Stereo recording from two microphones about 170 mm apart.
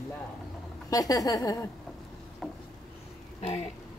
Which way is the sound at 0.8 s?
20° left (ahead or behind).